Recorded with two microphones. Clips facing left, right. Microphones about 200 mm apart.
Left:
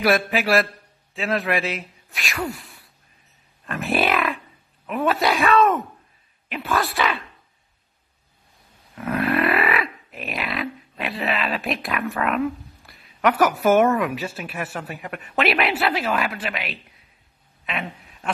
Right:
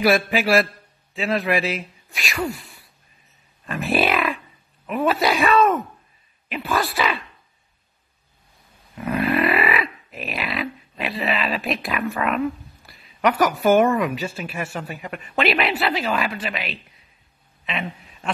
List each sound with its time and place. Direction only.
0.0 s speech: centre (ahead or behind)
8.9 s grunt: 5° right (ahead or behind)
17.6 s a man's voice: 5° left (ahead or behind)